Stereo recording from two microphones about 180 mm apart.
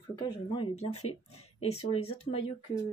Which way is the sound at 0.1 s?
25° left (ahead or behind).